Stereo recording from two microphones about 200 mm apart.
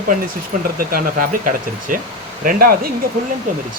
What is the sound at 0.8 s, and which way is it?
Speech, 45° right (ahead or behind).